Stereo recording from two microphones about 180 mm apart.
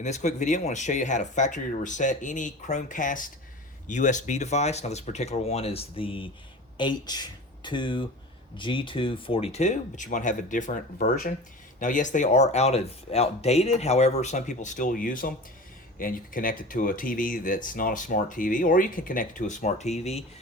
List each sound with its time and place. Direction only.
0.0 s speech: 40° left (ahead or behind)